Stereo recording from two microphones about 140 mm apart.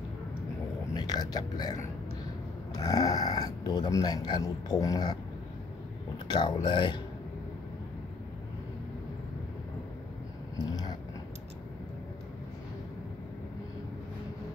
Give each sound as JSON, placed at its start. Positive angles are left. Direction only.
{"t": 0.9, "sound": "speech", "side_deg": 30}
{"t": 6.2, "sound": "speech", "side_deg": 35}
{"t": 10.6, "sound": "a sound", "side_deg": 30}